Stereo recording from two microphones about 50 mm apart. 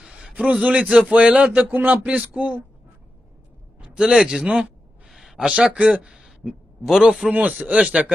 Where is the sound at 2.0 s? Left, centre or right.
Right.